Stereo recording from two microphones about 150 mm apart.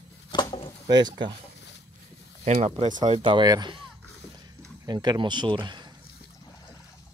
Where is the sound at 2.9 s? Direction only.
30° right (ahead or behind).